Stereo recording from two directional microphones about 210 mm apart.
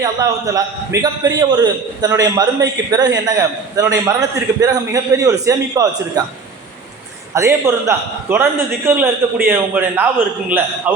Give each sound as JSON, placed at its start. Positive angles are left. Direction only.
{"t": 0.0, "sound": "a man's voice", "side_deg": -15}
{"t": 7.3, "sound": "a man's voice", "side_deg": -15}